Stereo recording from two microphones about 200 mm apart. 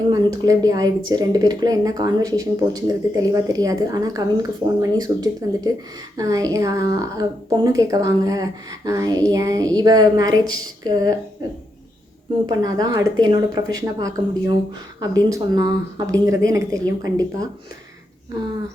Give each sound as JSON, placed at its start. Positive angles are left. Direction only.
{"t": 0.1, "sound": "a woman's voice", "side_deg": -20}
{"t": 12.5, "sound": "a woman's voice", "side_deg": -20}